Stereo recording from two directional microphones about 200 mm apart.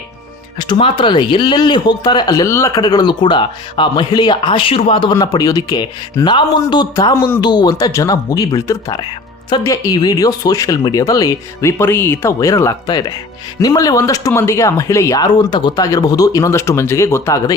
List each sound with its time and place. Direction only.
0.6 s speech: 25° left (ahead or behind)